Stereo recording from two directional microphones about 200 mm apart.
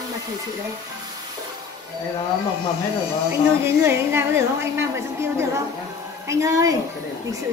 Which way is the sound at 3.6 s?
10° right (ahead or behind).